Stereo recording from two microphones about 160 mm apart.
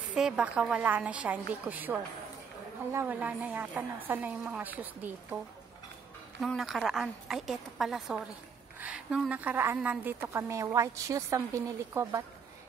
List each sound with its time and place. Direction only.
0.1 s a woman's voice: 5° right (ahead or behind)
6.4 s a woman's voice: centre (ahead or behind); by 12.2 s 15° right (ahead or behind)